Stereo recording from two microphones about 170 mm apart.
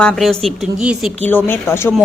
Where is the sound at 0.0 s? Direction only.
Centre (ahead or behind).